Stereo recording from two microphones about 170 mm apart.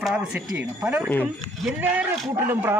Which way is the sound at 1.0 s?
5° left (ahead or behind).